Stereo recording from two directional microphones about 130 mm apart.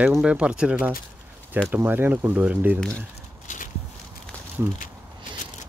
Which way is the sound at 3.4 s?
90° left.